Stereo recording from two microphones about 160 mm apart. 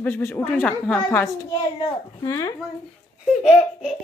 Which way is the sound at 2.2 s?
20° left (ahead or behind).